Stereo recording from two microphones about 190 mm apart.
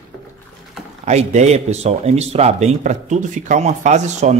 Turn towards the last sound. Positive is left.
turn(degrees=-40)  # may be behind; listen again after turning